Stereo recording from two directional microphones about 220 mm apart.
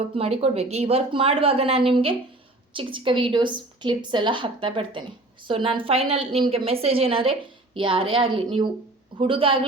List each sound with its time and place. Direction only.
0.2 s a woman's voice: 25° right (ahead or behind)